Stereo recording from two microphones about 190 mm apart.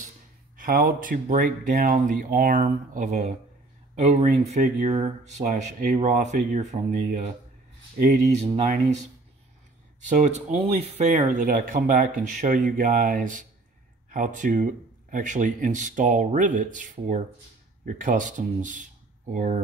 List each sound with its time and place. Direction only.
0.6 s speech: 45° right (ahead or behind)
8.4 s speech: 35° right (ahead or behind)
10.0 s speech: 40° right (ahead or behind)